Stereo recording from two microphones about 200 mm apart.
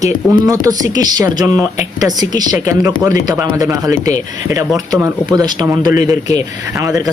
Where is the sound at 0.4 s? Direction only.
20° right (ahead or behind).